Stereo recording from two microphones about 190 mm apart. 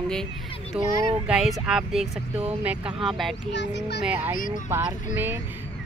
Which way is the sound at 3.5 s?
65° left (ahead or behind).